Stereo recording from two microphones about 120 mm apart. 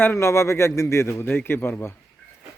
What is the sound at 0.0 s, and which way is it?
Speech, 20° left (ahead or behind).